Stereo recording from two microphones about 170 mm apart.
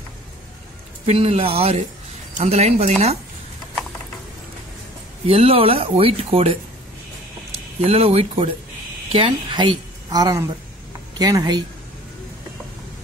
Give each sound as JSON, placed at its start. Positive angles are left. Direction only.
{"t": 1.0, "sound": "speech", "side_deg": -35}
{"t": 5.2, "sound": "speech", "side_deg": -35}
{"t": 7.8, "sound": "a woman's voice", "side_deg": -35}